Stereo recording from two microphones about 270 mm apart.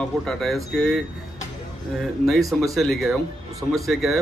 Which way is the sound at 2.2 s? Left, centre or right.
Centre.